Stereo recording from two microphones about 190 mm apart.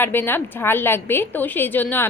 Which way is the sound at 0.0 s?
10° left (ahead or behind).